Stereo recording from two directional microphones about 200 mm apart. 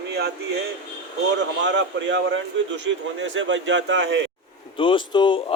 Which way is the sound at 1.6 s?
65° right (ahead or behind).